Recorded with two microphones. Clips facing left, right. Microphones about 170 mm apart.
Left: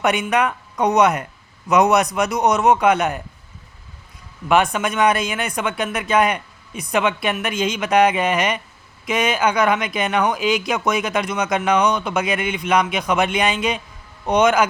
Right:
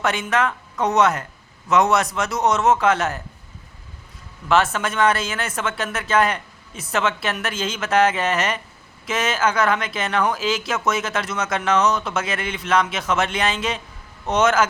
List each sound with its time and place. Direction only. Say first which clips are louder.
0.0 s a man's voice: left 3 dB; 15° left (ahead or behind)
4.4 s speech: left 2 dB; 15° left (ahead or behind)